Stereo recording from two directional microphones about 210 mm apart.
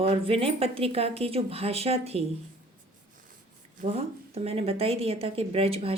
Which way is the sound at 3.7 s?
30° right (ahead or behind).